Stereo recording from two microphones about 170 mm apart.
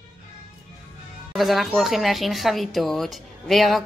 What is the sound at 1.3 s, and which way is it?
Speech, centre (ahead or behind).